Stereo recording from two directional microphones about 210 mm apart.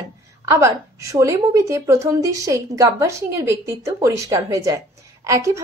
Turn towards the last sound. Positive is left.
turn(degrees=-15)  # may be behind; listen again after turning